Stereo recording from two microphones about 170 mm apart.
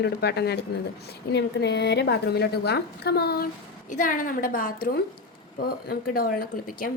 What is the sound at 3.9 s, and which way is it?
A woman's voice, 50° left (ahead or behind).